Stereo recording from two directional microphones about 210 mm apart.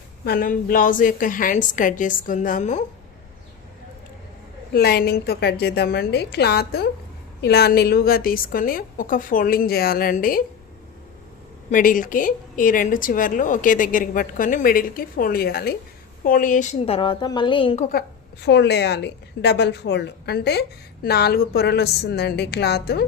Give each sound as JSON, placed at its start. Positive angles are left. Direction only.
{"t": 0.3, "sound": "a woman's voice", "side_deg": 45}
{"t": 4.7, "sound": "a woman's voice", "side_deg": 45}
{"t": 11.7, "sound": "a woman's voice", "side_deg": 40}
{"t": 18.4, "sound": "a woman's voice", "side_deg": 55}